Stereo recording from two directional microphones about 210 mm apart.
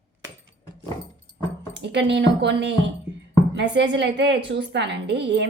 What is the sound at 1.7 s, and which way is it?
A woman's voice, 55° right (ahead or behind).